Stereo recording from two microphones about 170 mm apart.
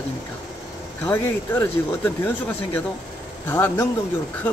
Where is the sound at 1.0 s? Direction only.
10° left (ahead or behind).